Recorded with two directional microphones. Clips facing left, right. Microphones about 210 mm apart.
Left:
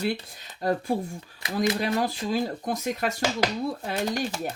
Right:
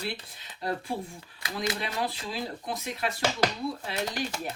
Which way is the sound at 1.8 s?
45° left (ahead or behind).